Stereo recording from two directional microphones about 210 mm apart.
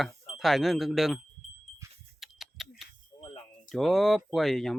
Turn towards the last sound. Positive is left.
turn(degrees=0)  # may be behind; listen again after turning